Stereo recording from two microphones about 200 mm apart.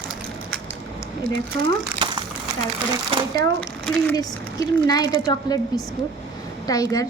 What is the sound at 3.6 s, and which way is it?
Speech, 5° left (ahead or behind).